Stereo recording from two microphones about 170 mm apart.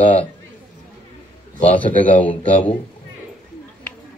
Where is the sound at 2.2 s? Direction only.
10° left (ahead or behind).